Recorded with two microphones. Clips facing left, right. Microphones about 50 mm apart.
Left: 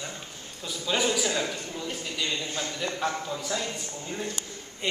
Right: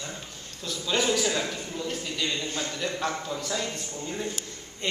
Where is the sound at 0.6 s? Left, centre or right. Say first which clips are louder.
Even; centre.